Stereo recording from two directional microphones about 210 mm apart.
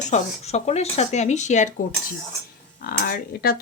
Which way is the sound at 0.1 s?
30° left (ahead or behind).